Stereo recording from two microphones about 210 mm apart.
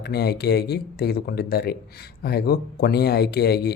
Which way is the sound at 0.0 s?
50° left (ahead or behind).